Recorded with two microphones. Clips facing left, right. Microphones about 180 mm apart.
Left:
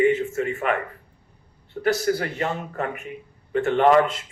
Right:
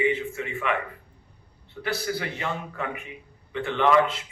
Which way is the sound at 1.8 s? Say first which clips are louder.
Left 7 dB; 45° left (ahead or behind).